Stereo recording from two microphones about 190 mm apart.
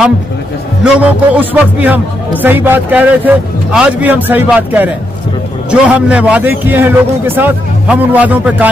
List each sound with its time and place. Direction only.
0.8 s a man's voice: 5° right (ahead or behind)